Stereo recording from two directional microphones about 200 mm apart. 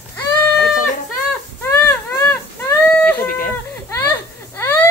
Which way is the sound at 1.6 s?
10° left (ahead or behind).